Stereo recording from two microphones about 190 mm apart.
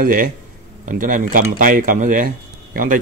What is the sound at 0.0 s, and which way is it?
Speech, 45° right (ahead or behind).